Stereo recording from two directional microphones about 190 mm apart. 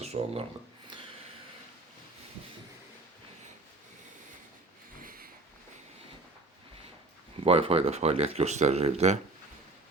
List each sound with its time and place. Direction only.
0.0 s speech: 35° right (ahead or behind)
5.0 s a sound: 50° right (ahead or behind)
7.4 s speech: 30° right (ahead or behind)